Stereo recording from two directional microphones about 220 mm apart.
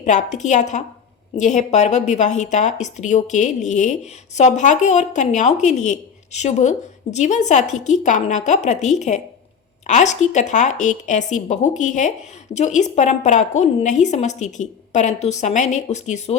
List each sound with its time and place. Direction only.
0.0 s speech: 30° left (ahead or behind)